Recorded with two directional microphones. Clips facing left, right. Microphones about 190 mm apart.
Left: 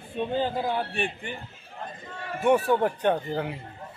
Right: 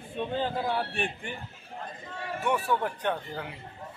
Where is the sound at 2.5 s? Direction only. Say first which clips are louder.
Left 7 dB; 40° left (ahead or behind).